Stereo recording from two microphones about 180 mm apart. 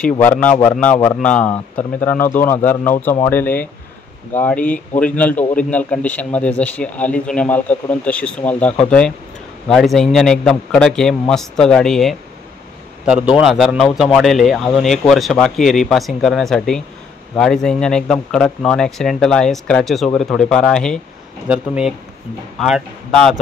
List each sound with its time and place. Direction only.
0.2 s speech: 10° left (ahead or behind)